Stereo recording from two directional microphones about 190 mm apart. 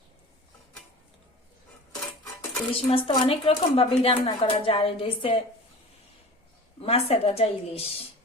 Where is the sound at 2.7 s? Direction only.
30° left (ahead or behind).